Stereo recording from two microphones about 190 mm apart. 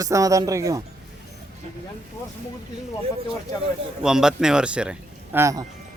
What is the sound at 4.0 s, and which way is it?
Speech, 5° right (ahead or behind).